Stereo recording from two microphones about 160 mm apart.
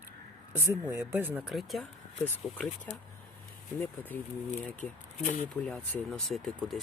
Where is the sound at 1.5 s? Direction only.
Centre (ahead or behind).